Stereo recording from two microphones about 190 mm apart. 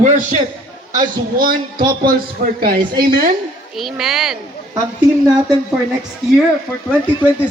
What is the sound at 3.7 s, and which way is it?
Speech, centre (ahead or behind).